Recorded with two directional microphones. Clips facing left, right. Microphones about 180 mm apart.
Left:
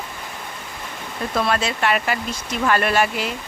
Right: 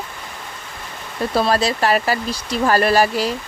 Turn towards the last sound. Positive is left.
turn(degrees=-35)  # may be behind; listen again after turning